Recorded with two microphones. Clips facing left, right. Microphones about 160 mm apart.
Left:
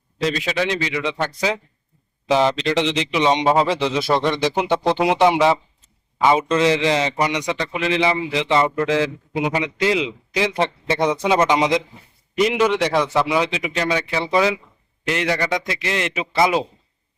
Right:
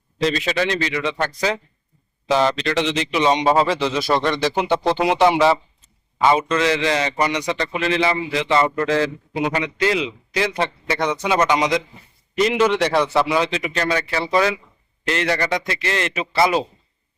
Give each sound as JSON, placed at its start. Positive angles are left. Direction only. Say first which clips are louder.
{"t": 0.2, "sound": "a man's voice", "louder": "right 1 dB", "side_deg": 10}
{"t": 6.5, "sound": "a man's voice", "louder": "left 2 dB", "side_deg": 25}
{"t": 12.4, "sound": "a man's voice", "louder": "even", "side_deg": 15}